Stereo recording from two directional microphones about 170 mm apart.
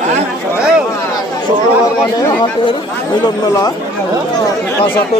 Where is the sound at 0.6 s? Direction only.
5° right (ahead or behind).